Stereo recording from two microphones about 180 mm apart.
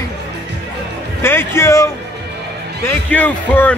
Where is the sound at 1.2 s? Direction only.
15° left (ahead or behind).